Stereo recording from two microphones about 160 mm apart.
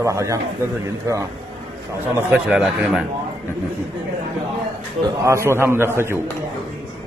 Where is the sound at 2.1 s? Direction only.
10° right (ahead or behind).